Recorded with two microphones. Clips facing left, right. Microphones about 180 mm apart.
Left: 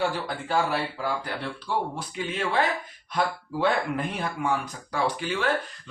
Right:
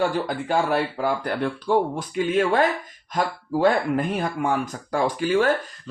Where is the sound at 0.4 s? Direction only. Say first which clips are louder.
Right 3 dB; 50° right (ahead or behind).